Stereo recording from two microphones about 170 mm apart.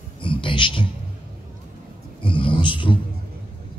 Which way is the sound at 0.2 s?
30° left (ahead or behind).